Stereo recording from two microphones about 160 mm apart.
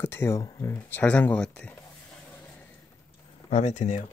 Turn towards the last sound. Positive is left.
turn(degrees=50)  # may be behind; listen again after turning